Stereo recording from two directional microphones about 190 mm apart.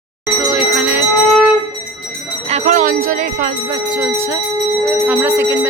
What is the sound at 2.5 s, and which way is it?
Speech, 45° right (ahead or behind).